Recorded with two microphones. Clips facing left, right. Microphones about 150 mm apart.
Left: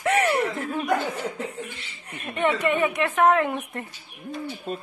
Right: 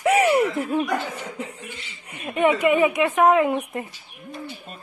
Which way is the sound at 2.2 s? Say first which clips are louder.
Right 4 dB; 5° right (ahead or behind).